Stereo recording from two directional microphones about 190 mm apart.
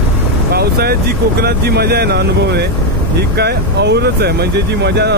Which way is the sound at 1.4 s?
55° right (ahead or behind).